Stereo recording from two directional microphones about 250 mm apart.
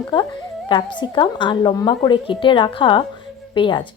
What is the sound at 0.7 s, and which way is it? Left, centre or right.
A woman's voice, centre.